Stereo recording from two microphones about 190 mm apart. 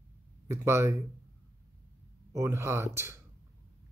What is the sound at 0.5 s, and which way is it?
Speech, 15° right (ahead or behind).